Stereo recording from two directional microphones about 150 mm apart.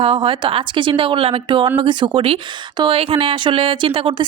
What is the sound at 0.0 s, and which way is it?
Speech, 35° right (ahead or behind).